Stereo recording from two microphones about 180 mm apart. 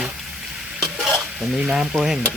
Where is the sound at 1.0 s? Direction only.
5° right (ahead or behind).